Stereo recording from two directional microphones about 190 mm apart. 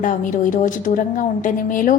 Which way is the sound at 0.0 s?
45° left (ahead or behind).